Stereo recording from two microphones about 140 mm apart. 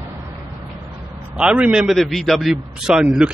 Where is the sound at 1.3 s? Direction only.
5° right (ahead or behind).